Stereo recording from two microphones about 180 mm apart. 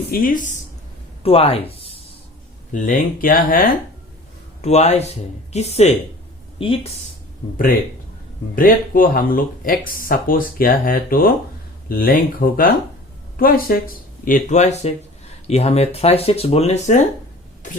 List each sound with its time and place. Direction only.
0.1 s speech: 50° left (ahead or behind)
1.2 s speech: 35° left (ahead or behind)
2.7 s speech: 50° left (ahead or behind)
4.6 s speech: 35° left (ahead or behind)
7.5 s speech: 50° left (ahead or behind)